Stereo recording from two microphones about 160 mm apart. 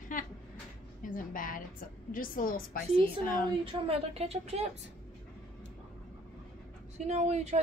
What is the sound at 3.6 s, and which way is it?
Speech, 35° right (ahead or behind).